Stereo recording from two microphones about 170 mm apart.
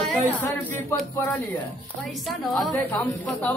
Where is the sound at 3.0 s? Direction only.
10° left (ahead or behind).